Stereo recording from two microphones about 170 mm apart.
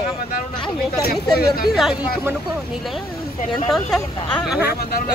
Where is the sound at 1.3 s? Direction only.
65° left (ahead or behind).